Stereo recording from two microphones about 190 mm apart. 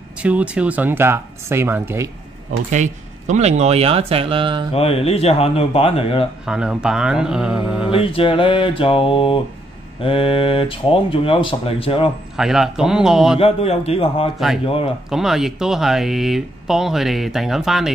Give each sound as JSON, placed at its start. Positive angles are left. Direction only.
{"t": 0.2, "sound": "speech", "side_deg": -5}
{"t": 2.7, "sound": "speech", "side_deg": -40}
{"t": 4.7, "sound": "speech", "side_deg": 30}
{"t": 6.4, "sound": "speech", "side_deg": -5}
{"t": 7.9, "sound": "speech", "side_deg": 30}
{"t": 12.4, "sound": "speech", "side_deg": 0}
{"t": 13.4, "sound": "speech", "side_deg": 30}
{"t": 15.0, "sound": "speech", "side_deg": 0}